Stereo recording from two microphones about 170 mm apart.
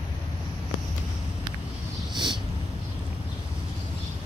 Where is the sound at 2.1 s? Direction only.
25° right (ahead or behind).